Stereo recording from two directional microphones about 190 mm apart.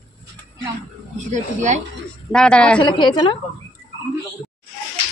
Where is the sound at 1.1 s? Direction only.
40° right (ahead or behind).